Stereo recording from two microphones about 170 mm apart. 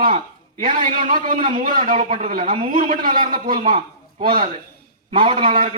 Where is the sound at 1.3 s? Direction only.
35° right (ahead or behind).